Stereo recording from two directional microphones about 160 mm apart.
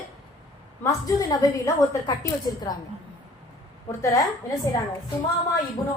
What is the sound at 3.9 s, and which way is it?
Speech, 20° left (ahead or behind).